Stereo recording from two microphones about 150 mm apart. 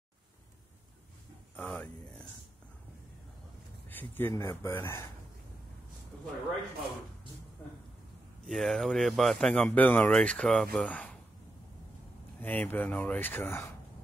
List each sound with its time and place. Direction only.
1.6 s a sound: 5° left (ahead or behind)
3.9 s speech: 10° left (ahead or behind)
8.5 s speech: centre (ahead or behind)
12.4 s speech: 10° left (ahead or behind)